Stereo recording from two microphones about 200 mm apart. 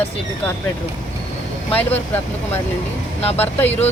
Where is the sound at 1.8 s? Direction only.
10° left (ahead or behind).